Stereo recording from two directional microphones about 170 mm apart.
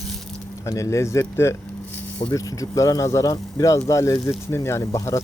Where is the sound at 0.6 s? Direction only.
15° left (ahead or behind).